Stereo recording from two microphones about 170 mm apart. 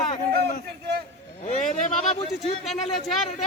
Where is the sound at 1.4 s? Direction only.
45° left (ahead or behind).